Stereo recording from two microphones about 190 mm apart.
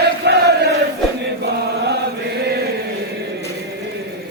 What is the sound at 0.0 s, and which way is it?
Crowd, 60° right (ahead or behind).